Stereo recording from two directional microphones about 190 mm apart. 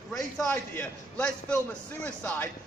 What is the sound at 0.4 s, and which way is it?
A man's voice, 5° left (ahead or behind).